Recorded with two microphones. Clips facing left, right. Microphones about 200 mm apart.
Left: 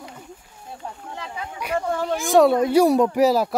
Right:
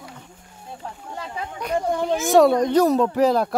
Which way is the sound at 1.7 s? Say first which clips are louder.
Right 2 dB; 15° right (ahead or behind).